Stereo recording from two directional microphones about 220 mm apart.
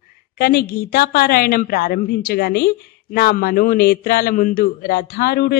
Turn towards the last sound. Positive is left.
turn(degrees=45)  # may be behind; listen again after turning